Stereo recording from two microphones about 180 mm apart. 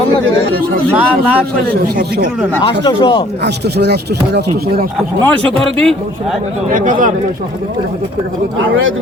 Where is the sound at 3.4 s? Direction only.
65° right (ahead or behind).